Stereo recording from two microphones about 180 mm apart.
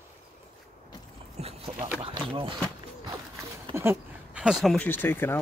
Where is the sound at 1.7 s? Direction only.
10° right (ahead or behind).